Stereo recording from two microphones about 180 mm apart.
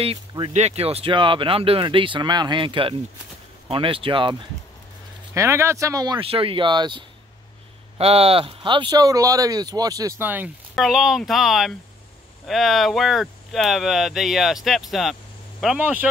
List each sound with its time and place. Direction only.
0.0 s speech: 30° right (ahead or behind)
5.3 s speech: 15° right (ahead or behind)